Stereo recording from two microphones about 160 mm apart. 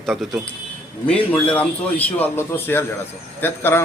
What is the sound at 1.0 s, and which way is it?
Speech, 10° left (ahead or behind).